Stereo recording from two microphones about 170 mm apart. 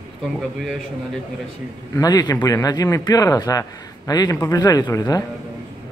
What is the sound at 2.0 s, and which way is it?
Speech, 20° left (ahead or behind).